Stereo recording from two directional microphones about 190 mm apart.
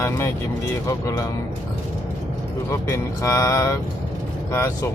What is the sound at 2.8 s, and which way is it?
Speech, 15° left (ahead or behind).